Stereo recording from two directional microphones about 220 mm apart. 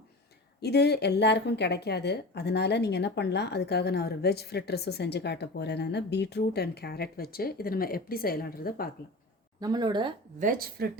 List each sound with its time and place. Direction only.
0.6 s a woman's voice: 50° left (ahead or behind)
9.6 s speech: 20° right (ahead or behind)
10.4 s speech: 40° right (ahead or behind)